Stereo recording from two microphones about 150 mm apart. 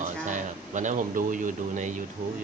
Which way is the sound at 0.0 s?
55° right (ahead or behind).